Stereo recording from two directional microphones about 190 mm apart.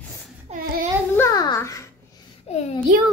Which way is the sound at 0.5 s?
35° right (ahead or behind).